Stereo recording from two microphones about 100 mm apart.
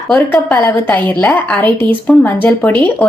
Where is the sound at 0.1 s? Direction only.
10° left (ahead or behind).